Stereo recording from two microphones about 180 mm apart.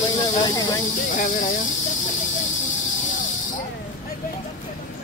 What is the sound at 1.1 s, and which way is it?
Speech, 45° left (ahead or behind).